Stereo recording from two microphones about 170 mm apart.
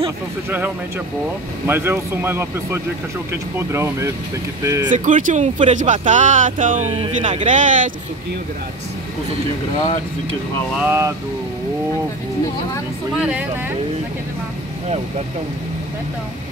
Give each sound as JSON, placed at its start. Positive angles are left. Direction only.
{"t": 1.7, "sound": "speech", "side_deg": -15}
{"t": 4.9, "sound": "speech", "side_deg": -50}
{"t": 10.8, "sound": "speech", "side_deg": -15}
{"t": 13.2, "sound": "speech", "side_deg": -5}